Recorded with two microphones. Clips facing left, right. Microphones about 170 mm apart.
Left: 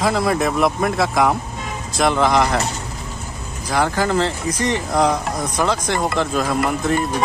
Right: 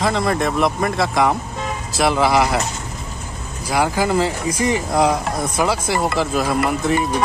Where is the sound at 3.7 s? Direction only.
10° right (ahead or behind).